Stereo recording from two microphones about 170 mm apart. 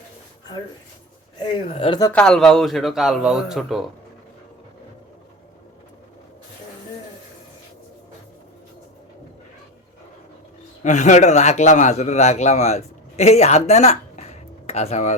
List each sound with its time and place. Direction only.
1.4 s speech: 30° left (ahead or behind)
2.1 s a man's voice: 5° left (ahead or behind)
10.8 s a man's voice: 45° left (ahead or behind)